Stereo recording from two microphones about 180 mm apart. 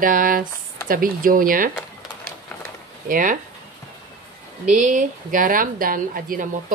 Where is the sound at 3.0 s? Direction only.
50° right (ahead or behind).